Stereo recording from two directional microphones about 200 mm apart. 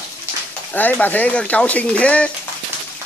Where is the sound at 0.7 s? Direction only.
10° left (ahead or behind).